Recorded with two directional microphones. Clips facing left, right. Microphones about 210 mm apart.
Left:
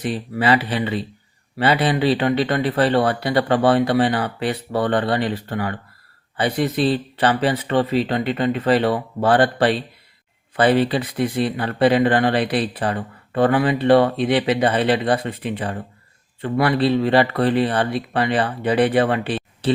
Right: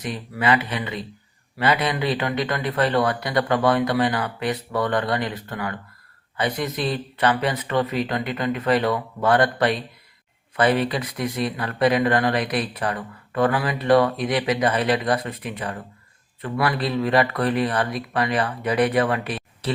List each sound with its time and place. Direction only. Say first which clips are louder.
0.0 s speech: left 4 dB; 30° left (ahead or behind)